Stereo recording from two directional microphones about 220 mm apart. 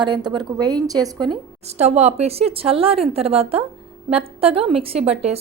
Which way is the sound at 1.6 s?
30° right (ahead or behind).